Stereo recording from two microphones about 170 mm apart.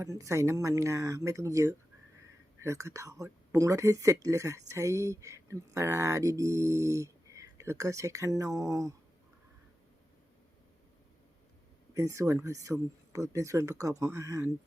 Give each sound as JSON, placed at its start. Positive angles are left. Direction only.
{"t": 0.0, "sound": "speech", "side_deg": -20}
{"t": 11.9, "sound": "speech", "side_deg": -15}